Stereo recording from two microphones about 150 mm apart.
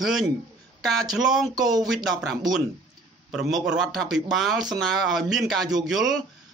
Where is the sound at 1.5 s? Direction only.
25° right (ahead or behind).